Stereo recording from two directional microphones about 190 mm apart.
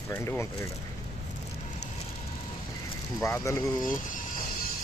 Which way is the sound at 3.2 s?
15° left (ahead or behind).